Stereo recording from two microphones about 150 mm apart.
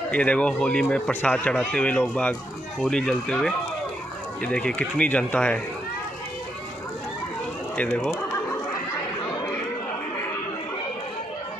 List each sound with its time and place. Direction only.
0.1 s speech: 10° left (ahead or behind)
7.7 s speech: 10° left (ahead or behind)